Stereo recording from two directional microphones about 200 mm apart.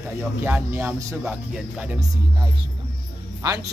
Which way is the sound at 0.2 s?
10° right (ahead or behind).